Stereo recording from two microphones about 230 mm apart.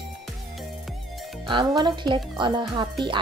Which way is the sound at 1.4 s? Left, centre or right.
Centre.